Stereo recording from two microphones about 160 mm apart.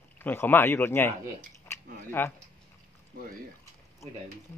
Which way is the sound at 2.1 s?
15° left (ahead or behind).